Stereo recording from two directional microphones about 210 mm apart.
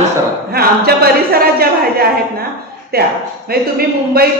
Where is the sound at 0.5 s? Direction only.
45° right (ahead or behind).